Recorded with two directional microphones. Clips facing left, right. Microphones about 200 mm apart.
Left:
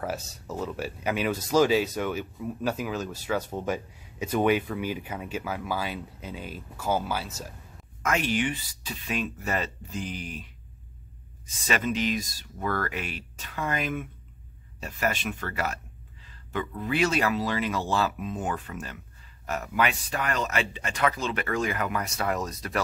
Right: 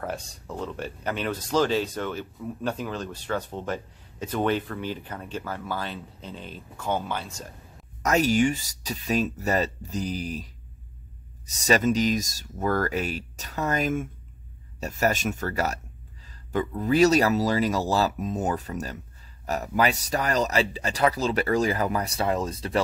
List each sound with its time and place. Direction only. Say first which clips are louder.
0.0 s speech: even; 5° left (ahead or behind)
8.0 s a man's voice: right 5 dB; 40° right (ahead or behind)